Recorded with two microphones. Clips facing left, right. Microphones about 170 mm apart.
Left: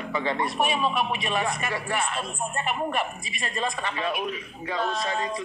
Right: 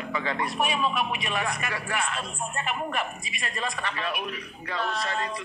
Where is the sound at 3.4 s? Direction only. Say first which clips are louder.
Left 3 dB; 25° left (ahead or behind).